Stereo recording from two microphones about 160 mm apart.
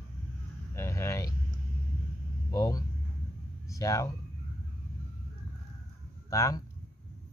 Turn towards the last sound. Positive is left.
turn(degrees=20)  # may be behind; listen again after turning